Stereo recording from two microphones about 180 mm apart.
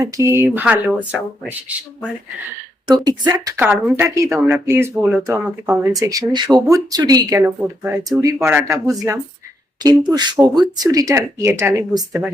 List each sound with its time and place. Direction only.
0.0 s a woman's voice: 15° right (ahead or behind)
2.8 s a woman's voice: 20° right (ahead or behind)
5.9 s a woman's voice: 20° right (ahead or behind)